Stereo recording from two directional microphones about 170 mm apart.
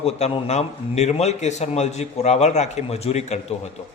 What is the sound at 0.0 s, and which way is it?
A man's voice, 40° left (ahead or behind).